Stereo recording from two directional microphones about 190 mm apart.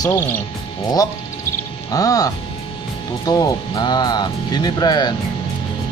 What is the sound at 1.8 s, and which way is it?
Speech, 20° left (ahead or behind).